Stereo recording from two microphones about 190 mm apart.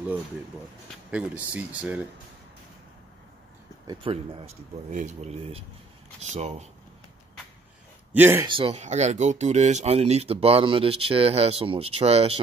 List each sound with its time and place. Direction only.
1.1 s speech: 5° right (ahead or behind)
3.8 s speech: 25° right (ahead or behind)
8.1 s speech: 10° right (ahead or behind)
8.5 s speech: 30° right (ahead or behind)